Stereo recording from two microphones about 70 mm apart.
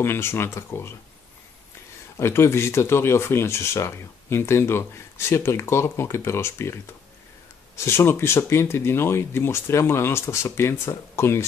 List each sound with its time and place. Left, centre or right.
0.0 s speech: left
2.1 s speech: left